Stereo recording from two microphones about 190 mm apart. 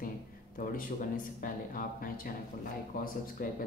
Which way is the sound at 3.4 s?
50° left (ahead or behind).